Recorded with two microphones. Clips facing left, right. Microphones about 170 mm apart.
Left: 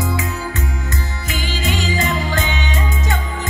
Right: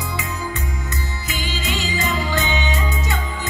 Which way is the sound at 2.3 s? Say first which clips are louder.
Even; 50° left (ahead or behind).